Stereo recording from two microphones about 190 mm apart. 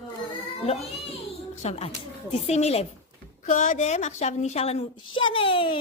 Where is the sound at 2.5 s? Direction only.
35° left (ahead or behind).